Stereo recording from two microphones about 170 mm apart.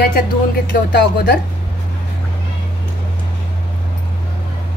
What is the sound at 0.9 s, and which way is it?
Speech, 85° left.